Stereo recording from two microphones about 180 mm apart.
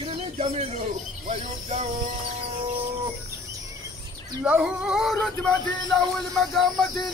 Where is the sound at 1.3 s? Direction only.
35° right (ahead or behind).